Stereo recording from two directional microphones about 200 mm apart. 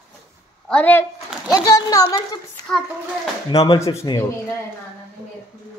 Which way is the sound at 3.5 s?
20° left (ahead or behind).